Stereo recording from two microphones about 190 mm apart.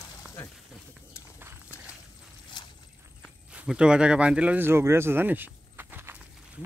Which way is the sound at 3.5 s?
5° right (ahead or behind).